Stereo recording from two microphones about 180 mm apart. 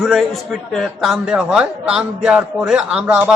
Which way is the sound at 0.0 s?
Centre (ahead or behind).